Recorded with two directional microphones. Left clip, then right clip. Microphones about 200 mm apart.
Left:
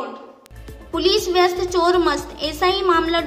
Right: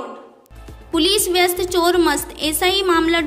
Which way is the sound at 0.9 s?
30° right (ahead or behind).